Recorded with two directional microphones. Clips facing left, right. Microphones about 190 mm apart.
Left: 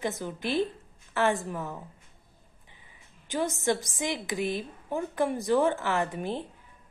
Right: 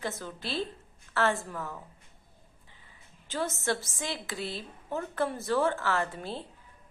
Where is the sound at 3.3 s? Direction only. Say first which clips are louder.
Left 4 dB; 15° left (ahead or behind).